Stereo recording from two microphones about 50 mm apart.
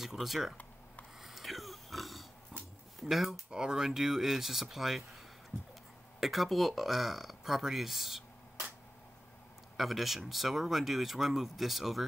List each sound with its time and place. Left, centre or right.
0.0 s speech: centre
1.2 s pig: centre
2.5 s a sound: centre
3.0 s speech: centre
3.4 s speech: centre
5.5 s a sound: right
6.1 s speech: centre
9.8 s speech: centre